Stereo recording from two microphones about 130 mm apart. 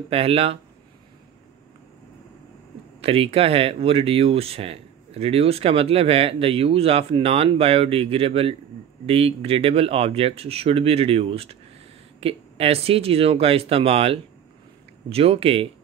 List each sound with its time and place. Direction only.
0.1 s speech: 45° right (ahead or behind)
3.0 s speech: 50° right (ahead or behind)